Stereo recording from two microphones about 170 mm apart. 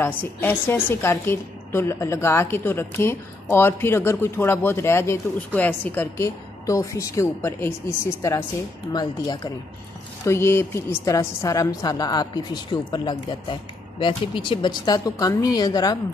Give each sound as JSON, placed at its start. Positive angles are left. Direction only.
{"t": 0.0, "sound": "a woman's voice", "side_deg": 10}